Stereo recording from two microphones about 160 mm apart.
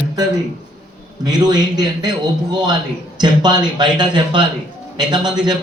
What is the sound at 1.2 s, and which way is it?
Speech, 25° right (ahead or behind).